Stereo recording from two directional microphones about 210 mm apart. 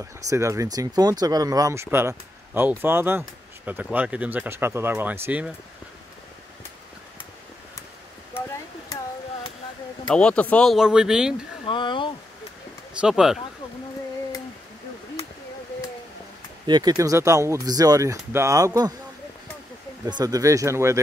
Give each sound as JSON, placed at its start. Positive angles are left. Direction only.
{"t": 0.0, "sound": "speech", "side_deg": -15}
{"t": 10.0, "sound": "speech", "side_deg": 5}
{"t": 11.6, "sound": "a sound", "side_deg": 25}
{"t": 13.0, "sound": "speech", "side_deg": 0}
{"t": 16.6, "sound": "speech", "side_deg": -20}
{"t": 20.1, "sound": "speech", "side_deg": -20}